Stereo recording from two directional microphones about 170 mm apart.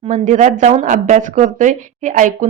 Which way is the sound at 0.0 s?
45° right (ahead or behind).